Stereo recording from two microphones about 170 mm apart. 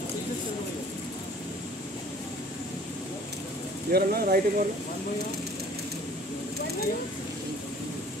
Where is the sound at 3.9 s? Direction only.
60° right (ahead or behind).